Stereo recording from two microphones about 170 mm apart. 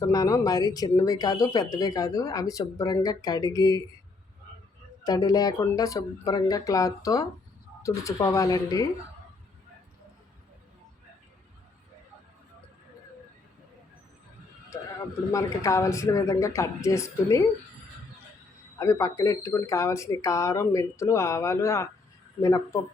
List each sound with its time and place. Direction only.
0.1 s speech: 20° left (ahead or behind)
5.0 s speech: 20° left (ahead or behind)
15.3 s speech: 20° left (ahead or behind)
18.8 s speech: 20° left (ahead or behind)